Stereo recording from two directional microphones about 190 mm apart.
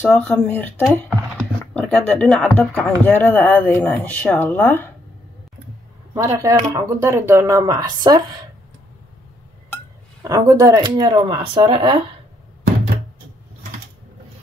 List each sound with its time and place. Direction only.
0.0 s speech: 10° left (ahead or behind)
6.1 s speech: 15° right (ahead or behind)
10.2 s speech: 20° right (ahead or behind)